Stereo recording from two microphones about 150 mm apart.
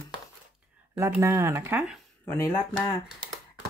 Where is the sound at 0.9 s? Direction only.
20° right (ahead or behind).